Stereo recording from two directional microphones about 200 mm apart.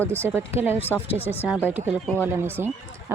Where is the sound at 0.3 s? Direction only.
10° right (ahead or behind).